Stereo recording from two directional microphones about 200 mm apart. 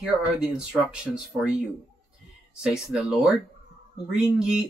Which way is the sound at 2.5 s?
5° right (ahead or behind).